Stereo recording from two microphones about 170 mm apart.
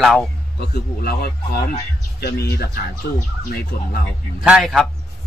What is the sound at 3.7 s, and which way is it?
Speech, 60° left (ahead or behind).